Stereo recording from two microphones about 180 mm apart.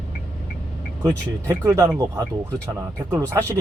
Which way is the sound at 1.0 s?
15° right (ahead or behind).